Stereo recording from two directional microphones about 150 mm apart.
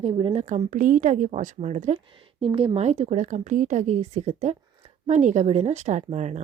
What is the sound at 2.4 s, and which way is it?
A woman's voice, 40° right (ahead or behind).